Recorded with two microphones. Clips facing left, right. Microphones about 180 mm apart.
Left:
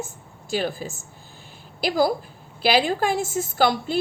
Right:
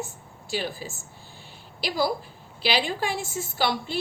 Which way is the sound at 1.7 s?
50° left (ahead or behind).